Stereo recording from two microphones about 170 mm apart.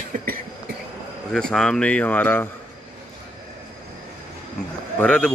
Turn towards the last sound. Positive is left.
turn(degrees=10)  # may be behind; listen again after turning